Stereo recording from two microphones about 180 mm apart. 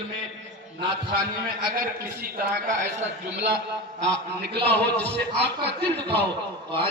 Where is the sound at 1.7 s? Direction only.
50° right (ahead or behind).